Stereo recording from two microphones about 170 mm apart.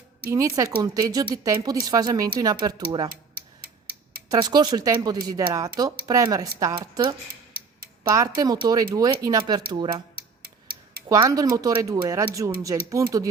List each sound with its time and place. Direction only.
0.3 s speech: 15° right (ahead or behind)
3.3 s tick-tock: 65° right (ahead or behind)
4.3 s speech: 25° right (ahead or behind)
11.1 s speech: 20° right (ahead or behind)